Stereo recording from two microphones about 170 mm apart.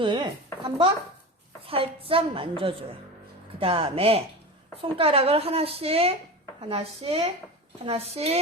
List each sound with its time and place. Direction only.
0.0 s speech: 25° right (ahead or behind)